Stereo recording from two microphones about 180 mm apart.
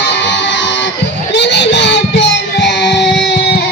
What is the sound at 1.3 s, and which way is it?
Child singing, 75° left (ahead or behind).